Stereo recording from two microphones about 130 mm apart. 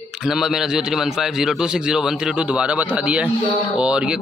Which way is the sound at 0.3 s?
5° right (ahead or behind).